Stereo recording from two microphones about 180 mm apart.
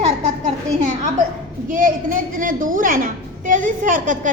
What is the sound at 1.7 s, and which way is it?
A woman's voice, 50° right (ahead or behind).